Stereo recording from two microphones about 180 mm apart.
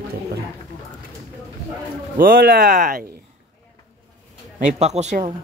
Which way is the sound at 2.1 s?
55° right (ahead or behind).